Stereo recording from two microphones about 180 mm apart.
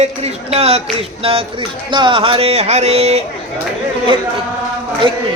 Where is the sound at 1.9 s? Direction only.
25° right (ahead or behind).